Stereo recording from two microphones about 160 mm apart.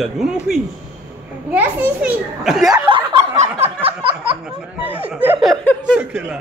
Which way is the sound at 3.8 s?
35° right (ahead or behind).